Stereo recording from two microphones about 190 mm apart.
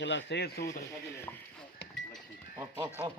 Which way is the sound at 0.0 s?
70° left (ahead or behind).